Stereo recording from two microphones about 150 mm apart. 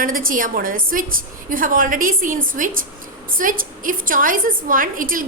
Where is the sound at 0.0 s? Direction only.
70° right (ahead or behind).